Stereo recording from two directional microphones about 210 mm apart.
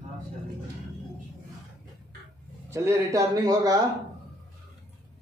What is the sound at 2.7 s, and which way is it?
A man's voice, 15° right (ahead or behind).